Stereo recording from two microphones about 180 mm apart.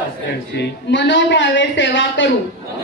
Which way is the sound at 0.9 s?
90° left.